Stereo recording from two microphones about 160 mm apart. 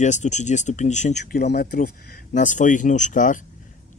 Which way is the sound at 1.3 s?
80° left.